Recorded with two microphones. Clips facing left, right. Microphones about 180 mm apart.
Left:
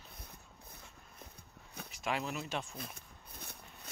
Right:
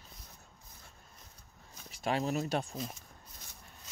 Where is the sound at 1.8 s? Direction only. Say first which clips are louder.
Right 5 dB; 35° right (ahead or behind).